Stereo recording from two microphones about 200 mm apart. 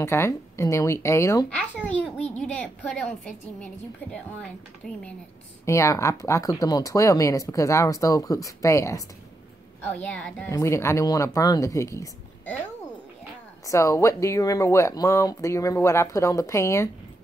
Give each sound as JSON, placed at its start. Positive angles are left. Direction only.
{"t": 0.0, "sound": "speech", "side_deg": 15}
{"t": 2.3, "sound": "a woman's voice", "side_deg": 0}
{"t": 5.7, "sound": "speech", "side_deg": 15}
{"t": 13.7, "sound": "speech", "side_deg": 15}